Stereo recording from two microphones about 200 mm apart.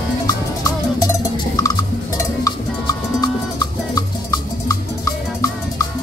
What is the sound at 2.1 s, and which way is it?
Cowbell, 15° left (ahead or behind).